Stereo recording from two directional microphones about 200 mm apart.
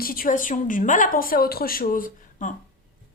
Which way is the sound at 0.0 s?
45° left (ahead or behind).